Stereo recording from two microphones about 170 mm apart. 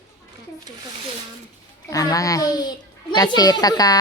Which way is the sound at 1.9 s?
20° left (ahead or behind).